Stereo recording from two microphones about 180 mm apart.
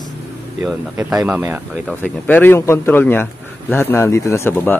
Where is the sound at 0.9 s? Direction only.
15° right (ahead or behind).